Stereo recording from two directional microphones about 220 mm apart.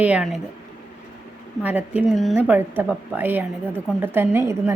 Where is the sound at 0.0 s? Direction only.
5° right (ahead or behind).